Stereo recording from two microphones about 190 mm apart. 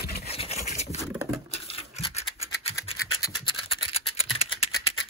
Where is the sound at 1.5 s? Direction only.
30° left (ahead or behind).